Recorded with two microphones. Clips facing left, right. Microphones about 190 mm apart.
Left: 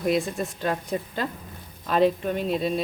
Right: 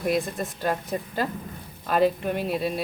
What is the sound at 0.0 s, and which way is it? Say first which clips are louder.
Speech: left 1 dB; centre (ahead or behind).